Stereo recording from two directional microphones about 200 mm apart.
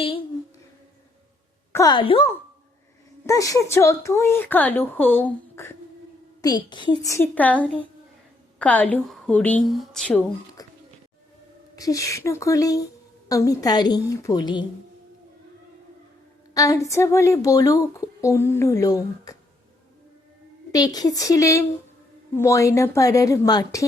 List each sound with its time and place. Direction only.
1.7 s a woman's voice: 20° left (ahead or behind)
3.2 s a woman's voice: 15° left (ahead or behind)
10.6 s a sound: 20° left (ahead or behind)
11.8 s a woman's voice: 15° left (ahead or behind)
16.6 s a woman's voice: 15° left (ahead or behind)
20.7 s a woman's voice: 20° left (ahead or behind)